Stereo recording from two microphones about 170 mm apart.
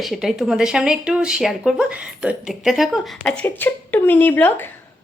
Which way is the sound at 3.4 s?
10° left (ahead or behind).